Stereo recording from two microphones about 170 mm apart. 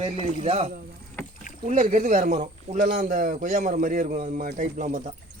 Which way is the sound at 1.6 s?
50° right (ahead or behind).